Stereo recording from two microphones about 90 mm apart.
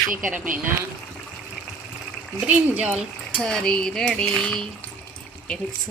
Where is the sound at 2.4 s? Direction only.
15° right (ahead or behind).